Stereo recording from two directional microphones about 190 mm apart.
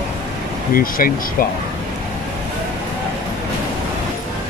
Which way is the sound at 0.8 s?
50° left (ahead or behind).